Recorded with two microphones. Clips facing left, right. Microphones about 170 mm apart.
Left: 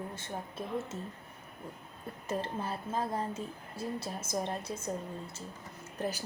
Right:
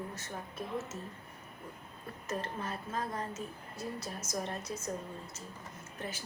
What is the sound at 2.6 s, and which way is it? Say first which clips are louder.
A woman's voice: left 3 dB; 30° left (ahead or behind).